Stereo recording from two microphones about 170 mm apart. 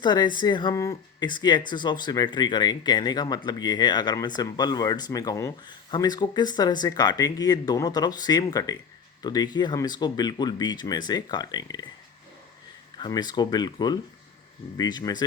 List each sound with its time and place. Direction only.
0.0 s speech: 25° left (ahead or behind)
13.0 s speech: 25° left (ahead or behind)